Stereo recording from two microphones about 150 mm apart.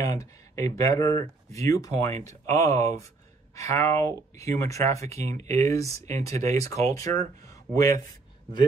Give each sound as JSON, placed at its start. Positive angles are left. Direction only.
{"t": 0.0, "sound": "speech", "side_deg": 20}